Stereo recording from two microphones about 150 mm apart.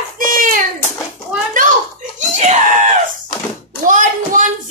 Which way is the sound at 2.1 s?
55° right (ahead or behind).